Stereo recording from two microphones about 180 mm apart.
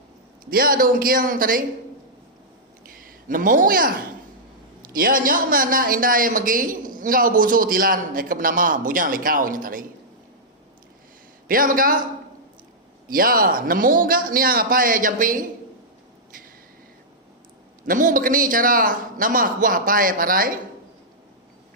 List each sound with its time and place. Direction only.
0.5 s a man's voice: 55° right (ahead or behind)
2.8 s a man's voice: 50° right (ahead or behind)
11.4 s a man's voice: 50° right (ahead or behind)
13.1 s a man's voice: 55° right (ahead or behind)
17.8 s a man's voice: 50° right (ahead or behind)